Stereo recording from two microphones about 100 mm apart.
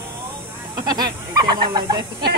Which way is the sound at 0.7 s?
45° right (ahead or behind).